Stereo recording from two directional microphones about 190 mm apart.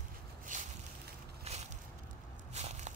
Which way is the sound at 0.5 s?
45° right (ahead or behind).